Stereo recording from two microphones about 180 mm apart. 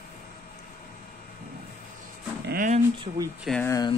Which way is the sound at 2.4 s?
55° right (ahead or behind).